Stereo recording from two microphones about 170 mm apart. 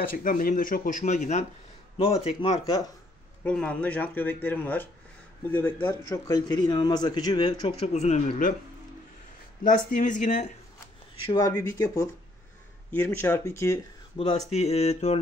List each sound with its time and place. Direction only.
0.0 s speech: 55° left (ahead or behind)
2.0 s mantra: 35° left (ahead or behind)
3.4 s speech: 5° left (ahead or behind); by 8.5 s 45° left (ahead or behind)
9.6 s speech: 50° left (ahead or behind)
11.3 s speech: 20° left (ahead or behind)
14.1 s mantra: 35° left (ahead or behind)